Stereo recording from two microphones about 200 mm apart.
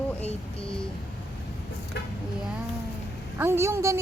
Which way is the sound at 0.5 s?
5° left (ahead or behind).